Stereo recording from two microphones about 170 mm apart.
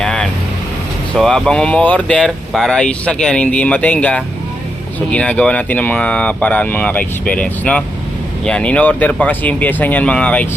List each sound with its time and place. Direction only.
0.0 s vehicle: 5° left (ahead or behind)
1.1 s speech: centre (ahead or behind)